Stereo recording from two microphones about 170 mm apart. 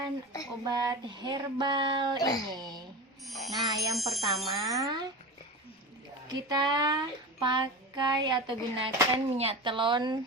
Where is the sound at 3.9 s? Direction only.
Centre (ahead or behind).